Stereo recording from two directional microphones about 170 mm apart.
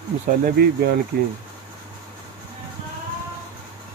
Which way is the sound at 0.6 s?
70° right (ahead or behind).